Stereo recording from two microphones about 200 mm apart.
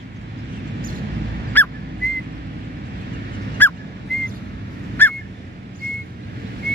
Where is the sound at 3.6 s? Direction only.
10° left (ahead or behind).